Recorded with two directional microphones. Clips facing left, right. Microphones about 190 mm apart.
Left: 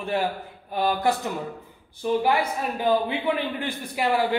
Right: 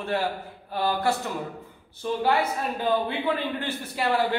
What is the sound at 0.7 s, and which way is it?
Speech, 15° left (ahead or behind).